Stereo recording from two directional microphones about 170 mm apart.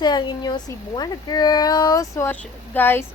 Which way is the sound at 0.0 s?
25° left (ahead or behind).